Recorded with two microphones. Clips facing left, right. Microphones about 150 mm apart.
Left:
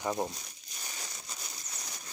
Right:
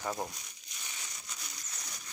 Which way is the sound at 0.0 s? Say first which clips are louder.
Left 4 dB; 20° left (ahead or behind).